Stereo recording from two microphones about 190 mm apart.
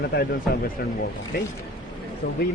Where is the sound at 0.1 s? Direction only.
55° left (ahead or behind).